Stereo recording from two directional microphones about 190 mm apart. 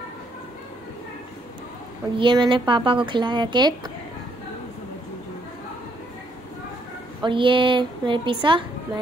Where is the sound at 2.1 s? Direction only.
25° right (ahead or behind).